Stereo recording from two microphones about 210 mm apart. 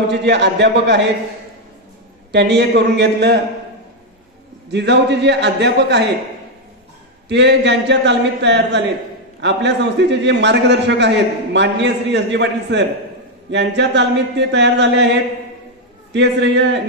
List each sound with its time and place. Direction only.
0.1 s a man's voice: 55° right (ahead or behind)
2.3 s a man's voice: 55° right (ahead or behind)
4.6 s a man's voice: 55° right (ahead or behind)
7.2 s a man's voice: 55° right (ahead or behind)